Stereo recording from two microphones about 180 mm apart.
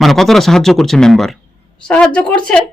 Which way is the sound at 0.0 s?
Centre (ahead or behind).